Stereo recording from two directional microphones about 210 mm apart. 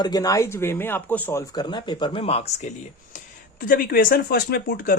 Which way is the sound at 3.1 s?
45° left (ahead or behind).